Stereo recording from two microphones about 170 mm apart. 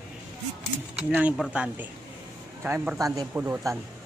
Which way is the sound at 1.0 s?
5° right (ahead or behind).